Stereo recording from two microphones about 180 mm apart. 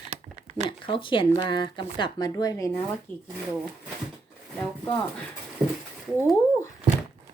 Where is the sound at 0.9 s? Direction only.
30° left (ahead or behind).